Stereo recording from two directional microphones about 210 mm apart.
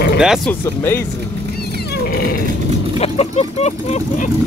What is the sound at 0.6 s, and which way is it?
Speech, 10° left (ahead or behind).